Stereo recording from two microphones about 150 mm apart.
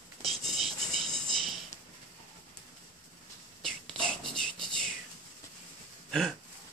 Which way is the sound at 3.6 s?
5° left (ahead or behind).